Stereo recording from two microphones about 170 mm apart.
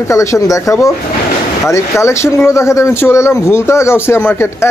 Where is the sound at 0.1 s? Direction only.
20° left (ahead or behind).